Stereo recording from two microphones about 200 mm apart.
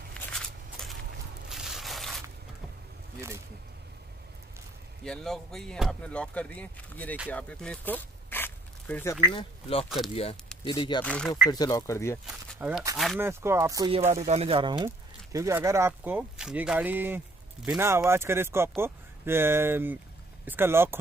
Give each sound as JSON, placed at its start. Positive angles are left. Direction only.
{"t": 0.1, "sound": "walk", "side_deg": 5}
{"t": 1.5, "sound": "a sound", "side_deg": 0}
{"t": 5.0, "sound": "speech", "side_deg": 0}
{"t": 7.2, "sound": "a sound", "side_deg": 5}
{"t": 9.3, "sound": "speech", "side_deg": 25}
{"t": 11.1, "sound": "speech", "side_deg": 5}
{"t": 11.4, "sound": "speech", "side_deg": 20}
{"t": 12.3, "sound": "speech", "side_deg": -5}
{"t": 13.2, "sound": "speech", "side_deg": -10}
{"t": 14.2, "sound": "speech", "side_deg": -30}